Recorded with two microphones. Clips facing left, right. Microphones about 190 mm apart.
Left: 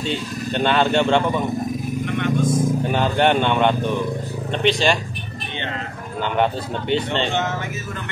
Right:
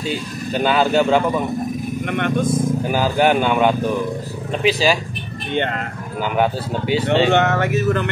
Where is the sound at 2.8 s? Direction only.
5° right (ahead or behind).